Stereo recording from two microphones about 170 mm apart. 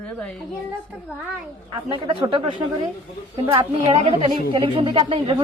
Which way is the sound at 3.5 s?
35° right (ahead or behind).